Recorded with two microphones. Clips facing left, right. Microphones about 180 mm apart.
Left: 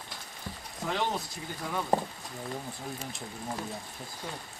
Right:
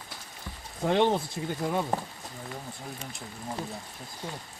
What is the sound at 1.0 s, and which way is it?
Speech, 25° right (ahead or behind).